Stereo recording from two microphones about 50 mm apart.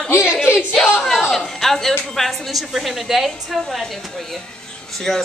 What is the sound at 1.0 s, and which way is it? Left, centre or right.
Speech, centre.